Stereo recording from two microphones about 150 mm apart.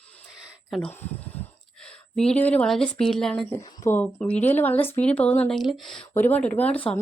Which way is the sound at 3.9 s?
10° left (ahead or behind).